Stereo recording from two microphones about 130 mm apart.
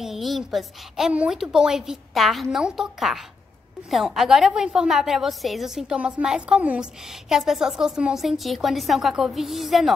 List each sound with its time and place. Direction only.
0.0 s a woman's voice: centre (ahead or behind)